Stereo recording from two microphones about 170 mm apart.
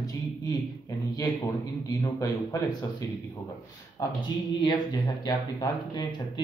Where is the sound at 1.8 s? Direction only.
20° left (ahead or behind).